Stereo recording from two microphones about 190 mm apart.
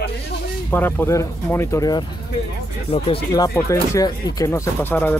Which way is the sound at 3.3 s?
15° left (ahead or behind).